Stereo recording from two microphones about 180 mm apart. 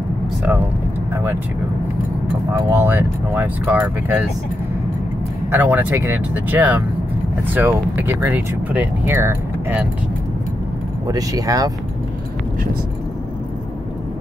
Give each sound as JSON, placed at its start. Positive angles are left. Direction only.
{"t": 1.1, "sound": "speech", "side_deg": -10}
{"t": 2.5, "sound": "speech", "side_deg": -10}
{"t": 5.5, "sound": "speech", "side_deg": -10}
{"t": 11.1, "sound": "speech", "side_deg": -20}